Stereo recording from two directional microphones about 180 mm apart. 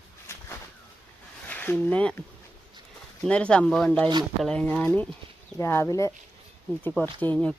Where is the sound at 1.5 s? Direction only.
10° left (ahead or behind).